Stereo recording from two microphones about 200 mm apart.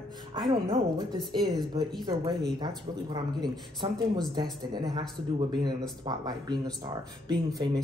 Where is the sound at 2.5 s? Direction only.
20° right (ahead or behind).